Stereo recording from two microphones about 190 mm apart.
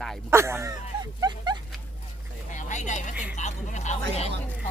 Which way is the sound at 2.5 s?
40° left (ahead or behind).